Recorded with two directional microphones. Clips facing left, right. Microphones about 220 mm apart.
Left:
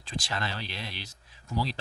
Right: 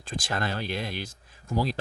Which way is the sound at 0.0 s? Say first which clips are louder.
Right 4 dB; 50° right (ahead or behind).